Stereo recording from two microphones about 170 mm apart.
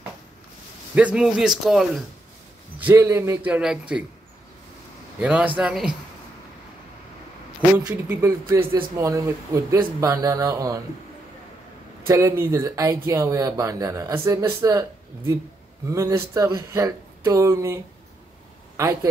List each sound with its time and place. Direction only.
0.9 s speech: 5° right (ahead or behind)
2.8 s speech: 15° right (ahead or behind)
5.2 s speech: 10° right (ahead or behind)
7.7 s speech: 10° right (ahead or behind)
8.5 s speech: 25° right (ahead or behind)
12.1 s speech: 15° right (ahead or behind)
18.8 s speech: 20° right (ahead or behind)